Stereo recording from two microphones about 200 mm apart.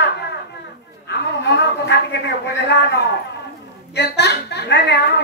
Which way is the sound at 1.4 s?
60° left (ahead or behind).